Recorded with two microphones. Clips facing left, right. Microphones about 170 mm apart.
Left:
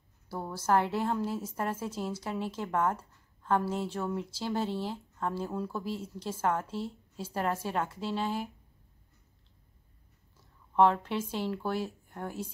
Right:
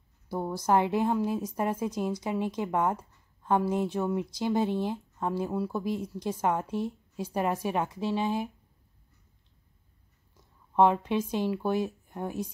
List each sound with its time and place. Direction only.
0.3 s a woman's voice: 15° right (ahead or behind)
10.3 s speech: 15° right (ahead or behind)